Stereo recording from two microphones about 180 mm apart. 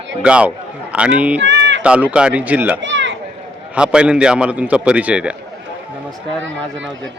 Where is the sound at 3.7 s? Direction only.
5° right (ahead or behind).